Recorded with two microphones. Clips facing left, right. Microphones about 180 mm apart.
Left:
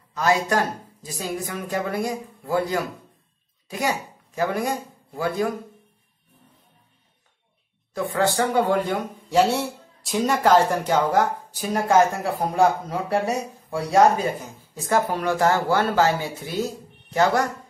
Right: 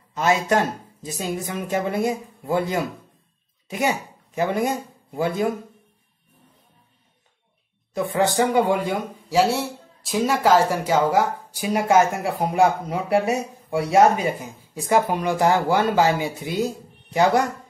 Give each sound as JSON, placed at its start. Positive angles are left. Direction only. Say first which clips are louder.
{"t": 0.1, "sound": "speech", "louder": "right 1 dB", "side_deg": -20}
{"t": 7.9, "sound": "speech", "louder": "right 1 dB", "side_deg": -20}